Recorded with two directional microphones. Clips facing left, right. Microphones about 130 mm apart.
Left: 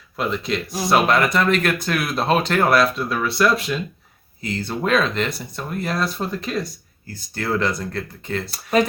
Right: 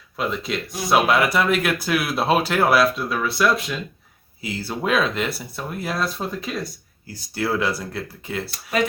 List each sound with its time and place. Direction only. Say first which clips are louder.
0.2 s speech: left 2 dB; centre (ahead or behind)
8.4 s speech: left 4 dB; 35° left (ahead or behind)